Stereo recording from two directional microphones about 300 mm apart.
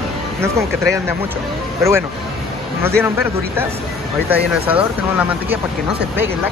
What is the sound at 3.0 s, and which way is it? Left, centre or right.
Speech, centre.